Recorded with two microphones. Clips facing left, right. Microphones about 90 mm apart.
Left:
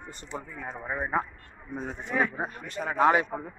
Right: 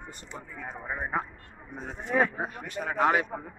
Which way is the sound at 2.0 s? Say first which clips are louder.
Right 3 dB; 35° right (ahead or behind).